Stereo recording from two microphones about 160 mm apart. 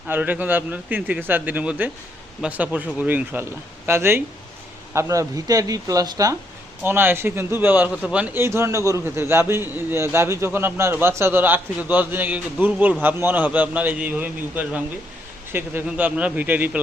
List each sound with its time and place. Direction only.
0.1 s a man's voice: 10° right (ahead or behind)